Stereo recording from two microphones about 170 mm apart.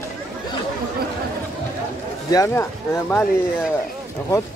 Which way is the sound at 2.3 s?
20° left (ahead or behind).